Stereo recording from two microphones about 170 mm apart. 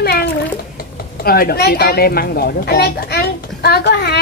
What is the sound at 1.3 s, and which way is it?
A child's voice, 65° left (ahead or behind).